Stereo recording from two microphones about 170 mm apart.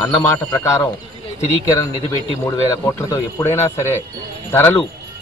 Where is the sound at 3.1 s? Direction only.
15° left (ahead or behind).